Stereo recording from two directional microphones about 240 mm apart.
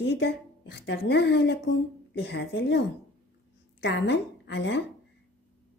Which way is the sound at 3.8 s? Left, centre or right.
Left.